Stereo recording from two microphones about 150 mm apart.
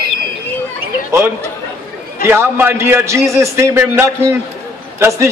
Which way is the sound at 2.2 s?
15° right (ahead or behind).